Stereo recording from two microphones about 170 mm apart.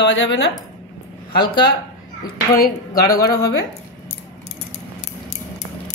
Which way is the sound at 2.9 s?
20° left (ahead or behind).